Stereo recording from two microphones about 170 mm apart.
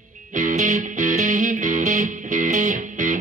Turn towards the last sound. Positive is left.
turn(degrees=-50)  # may be behind; listen again after turning